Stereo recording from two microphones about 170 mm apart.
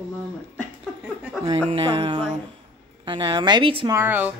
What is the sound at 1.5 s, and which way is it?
Speech, 35° right (ahead or behind).